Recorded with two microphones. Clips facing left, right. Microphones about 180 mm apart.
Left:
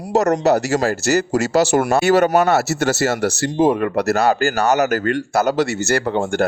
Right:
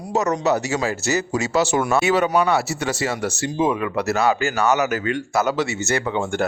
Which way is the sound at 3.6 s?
45° left (ahead or behind).